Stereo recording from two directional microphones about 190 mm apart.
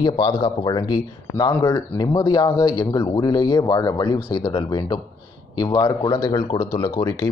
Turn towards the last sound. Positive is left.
turn(degrees=25)  # may be behind; listen again after turning